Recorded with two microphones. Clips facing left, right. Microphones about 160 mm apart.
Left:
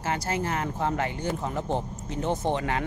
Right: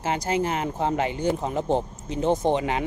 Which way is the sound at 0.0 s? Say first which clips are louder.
Right 4 dB; 20° right (ahead or behind).